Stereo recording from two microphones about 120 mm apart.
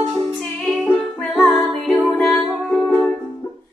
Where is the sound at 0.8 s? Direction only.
15° left (ahead or behind).